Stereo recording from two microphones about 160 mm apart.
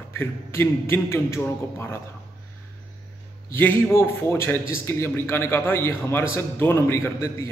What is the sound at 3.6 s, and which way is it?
A man's voice, 10° left (ahead or behind).